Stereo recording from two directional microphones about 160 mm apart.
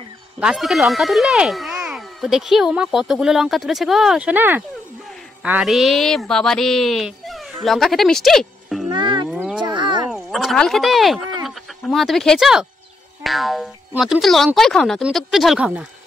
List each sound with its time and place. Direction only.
0.4 s speech: 5° right (ahead or behind)
8.9 s livestock: 30° right (ahead or behind)
9.3 s livestock: centre (ahead or behind)
9.6 s a sound: 30° right (ahead or behind)
10.0 s speech: centre (ahead or behind)